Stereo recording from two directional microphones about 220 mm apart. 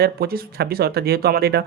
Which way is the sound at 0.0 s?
45° right (ahead or behind).